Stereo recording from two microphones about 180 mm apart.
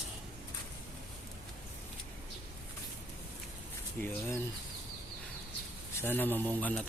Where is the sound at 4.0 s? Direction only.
10° left (ahead or behind).